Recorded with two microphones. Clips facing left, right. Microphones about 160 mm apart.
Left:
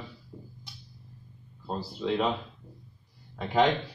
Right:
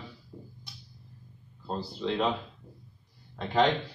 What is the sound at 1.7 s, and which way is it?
Speech, 5° left (ahead or behind).